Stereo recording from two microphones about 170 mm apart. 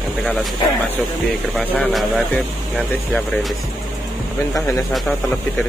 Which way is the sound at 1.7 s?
Centre (ahead or behind).